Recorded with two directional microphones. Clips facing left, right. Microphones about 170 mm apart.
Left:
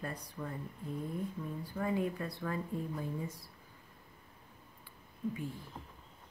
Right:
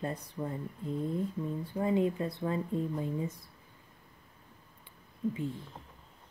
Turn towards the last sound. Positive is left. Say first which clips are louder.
# right 5 dB
turn(degrees=-25)  # may be behind; listen again after turning